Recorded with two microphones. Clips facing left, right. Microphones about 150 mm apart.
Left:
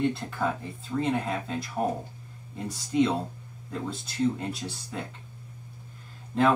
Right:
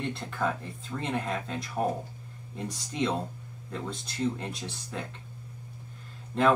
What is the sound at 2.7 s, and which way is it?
Speech, 5° left (ahead or behind).